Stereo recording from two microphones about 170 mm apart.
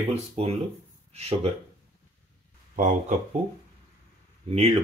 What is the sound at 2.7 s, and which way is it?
Speech, 50° right (ahead or behind).